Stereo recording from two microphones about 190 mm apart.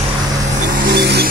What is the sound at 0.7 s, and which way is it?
Music, 60° right (ahead or behind).